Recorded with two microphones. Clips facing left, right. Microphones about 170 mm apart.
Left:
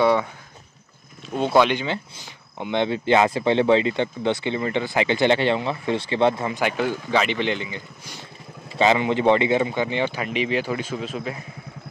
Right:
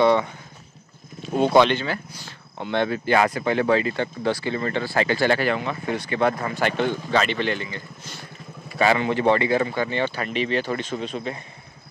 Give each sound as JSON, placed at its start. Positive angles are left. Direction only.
{"t": 0.0, "sound": "speech", "side_deg": 10}
{"t": 1.6, "sound": "speech", "side_deg": 10}